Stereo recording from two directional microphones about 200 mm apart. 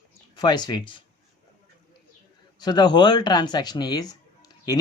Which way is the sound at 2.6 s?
20° left (ahead or behind).